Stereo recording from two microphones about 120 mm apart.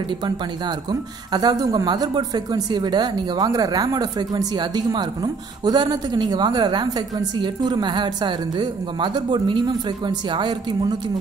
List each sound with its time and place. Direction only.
1.3 s speech: 35° right (ahead or behind)